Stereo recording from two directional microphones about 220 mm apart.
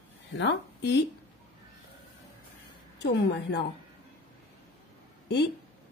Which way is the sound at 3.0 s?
50° left (ahead or behind).